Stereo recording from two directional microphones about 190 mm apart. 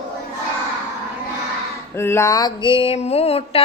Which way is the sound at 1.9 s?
15° left (ahead or behind).